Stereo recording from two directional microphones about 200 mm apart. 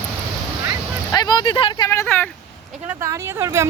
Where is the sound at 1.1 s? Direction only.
20° left (ahead or behind).